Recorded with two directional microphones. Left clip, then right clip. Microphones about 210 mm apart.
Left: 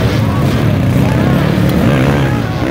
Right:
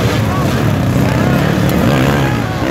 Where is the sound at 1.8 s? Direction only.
10° left (ahead or behind).